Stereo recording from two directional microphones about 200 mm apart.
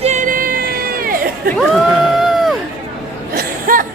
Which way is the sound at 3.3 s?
45° right (ahead or behind).